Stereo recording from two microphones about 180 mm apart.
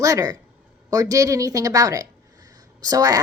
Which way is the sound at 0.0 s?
20° right (ahead or behind).